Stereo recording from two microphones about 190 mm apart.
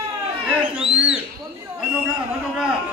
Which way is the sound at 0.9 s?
5° right (ahead or behind).